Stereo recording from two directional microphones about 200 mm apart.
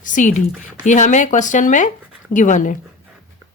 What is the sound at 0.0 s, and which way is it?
Speech, 40° left (ahead or behind).